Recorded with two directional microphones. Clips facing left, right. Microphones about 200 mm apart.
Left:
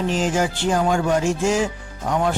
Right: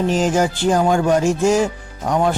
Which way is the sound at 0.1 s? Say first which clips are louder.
Right 4 dB; 40° right (ahead or behind).